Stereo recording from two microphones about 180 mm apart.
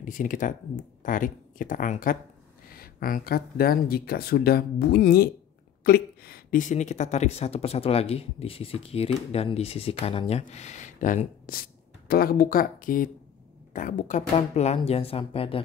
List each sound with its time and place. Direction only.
0.0 s speech: 45° left (ahead or behind); by 15.6 s 30° left (ahead or behind)